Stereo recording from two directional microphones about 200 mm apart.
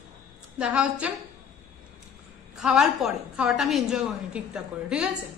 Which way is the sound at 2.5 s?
Centre (ahead or behind).